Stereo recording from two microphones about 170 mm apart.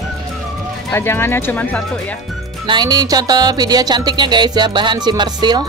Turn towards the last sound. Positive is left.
turn(degrees=-25)  # may be behind; listen again after turning